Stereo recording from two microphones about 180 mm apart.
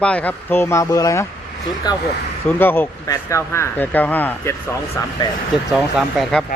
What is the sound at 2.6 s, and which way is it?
Speech, 10° left (ahead or behind).